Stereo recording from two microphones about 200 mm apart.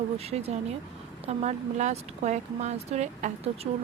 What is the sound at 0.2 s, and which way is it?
Speech, 30° right (ahead or behind).